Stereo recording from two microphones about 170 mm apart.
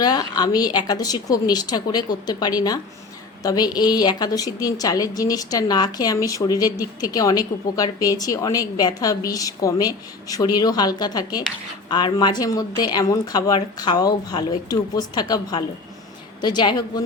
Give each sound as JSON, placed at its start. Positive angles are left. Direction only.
{"t": 0.0, "sound": "a woman's voice", "side_deg": 25}